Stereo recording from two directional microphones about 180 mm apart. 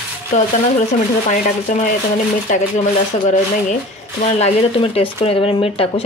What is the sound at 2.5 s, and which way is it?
Speech, 45° left (ahead or behind).